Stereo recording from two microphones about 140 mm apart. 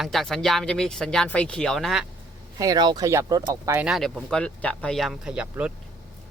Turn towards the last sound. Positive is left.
turn(degrees=-10)  # may be behind; listen again after turning